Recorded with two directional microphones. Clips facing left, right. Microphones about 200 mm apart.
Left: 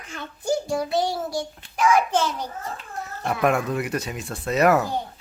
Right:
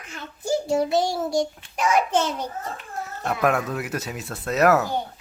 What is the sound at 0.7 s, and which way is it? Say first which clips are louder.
Child singing: right 2 dB; 25° right (ahead or behind).